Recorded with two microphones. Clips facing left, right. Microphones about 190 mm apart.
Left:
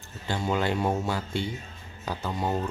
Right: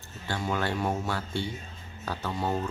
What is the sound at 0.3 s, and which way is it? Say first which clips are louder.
Speech: left 3 dB; 20° left (ahead or behind).